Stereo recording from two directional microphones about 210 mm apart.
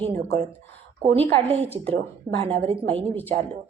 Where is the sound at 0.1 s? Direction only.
30° right (ahead or behind).